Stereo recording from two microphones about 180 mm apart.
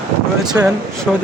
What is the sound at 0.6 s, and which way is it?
Speech, 15° right (ahead or behind).